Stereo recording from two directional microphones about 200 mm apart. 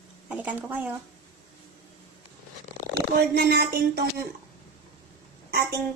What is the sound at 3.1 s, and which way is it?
Speech, 50° right (ahead or behind).